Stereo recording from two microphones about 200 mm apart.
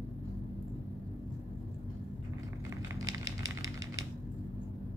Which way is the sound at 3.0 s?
75° right (ahead or behind).